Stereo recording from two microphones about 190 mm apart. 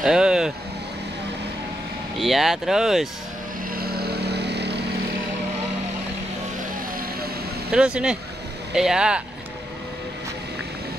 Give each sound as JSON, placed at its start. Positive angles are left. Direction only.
{"t": 0.0, "sound": "vehicle", "side_deg": -5}
{"t": 2.1, "sound": "speech", "side_deg": 0}
{"t": 3.7, "sound": "vehicle", "side_deg": -55}
{"t": 7.7, "sound": "speech", "side_deg": -5}